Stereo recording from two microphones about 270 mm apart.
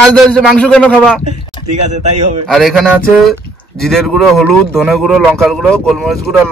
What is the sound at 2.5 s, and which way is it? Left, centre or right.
Speech, centre.